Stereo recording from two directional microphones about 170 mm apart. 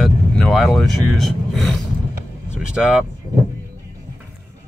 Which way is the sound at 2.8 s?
5° right (ahead or behind).